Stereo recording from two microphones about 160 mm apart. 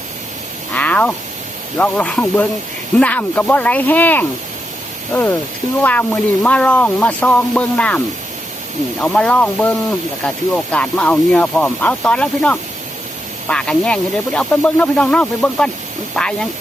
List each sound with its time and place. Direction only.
0.7 s frog: 10° left (ahead or behind)
1.8 s speech: 5° left (ahead or behind)
5.8 s speech: 10° left (ahead or behind)